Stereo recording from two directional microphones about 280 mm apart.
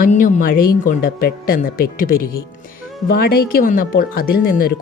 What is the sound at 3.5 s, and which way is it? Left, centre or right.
Speech, left.